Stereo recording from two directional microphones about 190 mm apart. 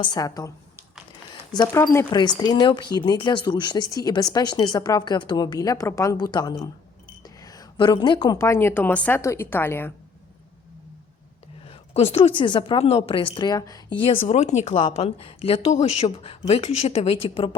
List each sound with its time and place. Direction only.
0.0 s speech: 20° left (ahead or behind)
11.6 s a woman's voice: 30° left (ahead or behind)